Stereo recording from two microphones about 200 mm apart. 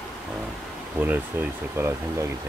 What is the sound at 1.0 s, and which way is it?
Speech, 10° right (ahead or behind).